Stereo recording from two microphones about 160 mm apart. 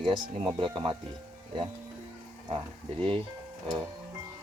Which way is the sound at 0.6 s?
30° right (ahead or behind).